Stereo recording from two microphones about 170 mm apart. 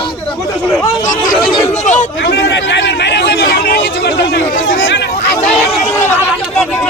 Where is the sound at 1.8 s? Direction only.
45° left (ahead or behind).